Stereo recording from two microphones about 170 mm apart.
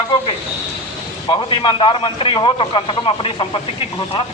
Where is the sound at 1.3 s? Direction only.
30° left (ahead or behind).